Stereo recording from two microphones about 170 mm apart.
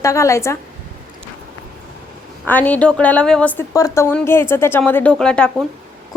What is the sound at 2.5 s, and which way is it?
A woman's voice, 10° left (ahead or behind).